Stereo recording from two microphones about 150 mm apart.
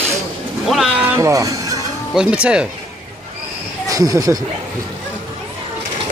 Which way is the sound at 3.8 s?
25° right (ahead or behind).